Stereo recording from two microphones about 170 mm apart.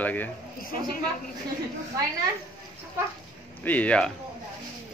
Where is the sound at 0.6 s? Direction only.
55° left (ahead or behind).